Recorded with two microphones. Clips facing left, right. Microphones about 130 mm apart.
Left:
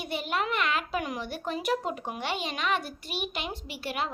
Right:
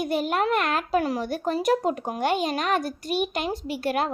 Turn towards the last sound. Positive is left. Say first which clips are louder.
# right 8 dB
turn(degrees=-45)  # may be behind; listen again after turning